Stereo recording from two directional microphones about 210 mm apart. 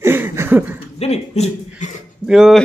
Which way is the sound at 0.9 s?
30° left (ahead or behind).